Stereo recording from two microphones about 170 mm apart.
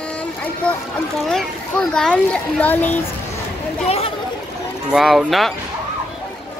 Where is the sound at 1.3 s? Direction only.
5° left (ahead or behind).